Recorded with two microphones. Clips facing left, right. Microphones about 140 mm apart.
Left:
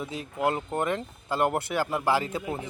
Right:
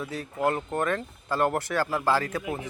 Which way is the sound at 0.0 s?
20° left (ahead or behind).